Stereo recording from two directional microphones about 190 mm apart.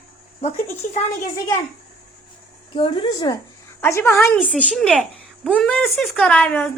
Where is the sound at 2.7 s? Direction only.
25° left (ahead or behind); by 6.7 s 10° left (ahead or behind).